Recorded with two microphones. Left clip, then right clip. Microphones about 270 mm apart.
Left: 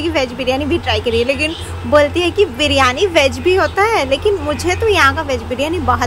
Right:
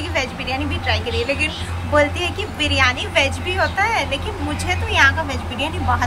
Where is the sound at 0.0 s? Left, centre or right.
Left.